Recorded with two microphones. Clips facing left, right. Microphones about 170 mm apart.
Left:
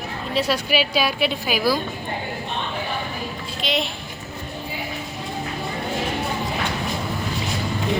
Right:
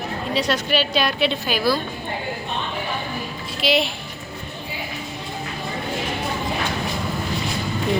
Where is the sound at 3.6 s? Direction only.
5° right (ahead or behind).